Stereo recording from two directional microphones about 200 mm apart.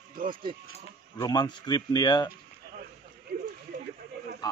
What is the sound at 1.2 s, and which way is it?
Speech, 20° left (ahead or behind).